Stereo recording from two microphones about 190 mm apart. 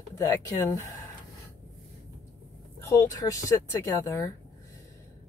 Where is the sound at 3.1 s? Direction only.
15° left (ahead or behind).